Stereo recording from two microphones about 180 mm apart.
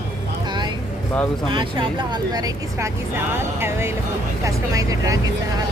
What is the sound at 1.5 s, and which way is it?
Speech, 25° right (ahead or behind).